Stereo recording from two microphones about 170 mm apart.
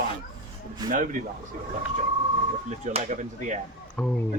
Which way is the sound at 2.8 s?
45° right (ahead or behind).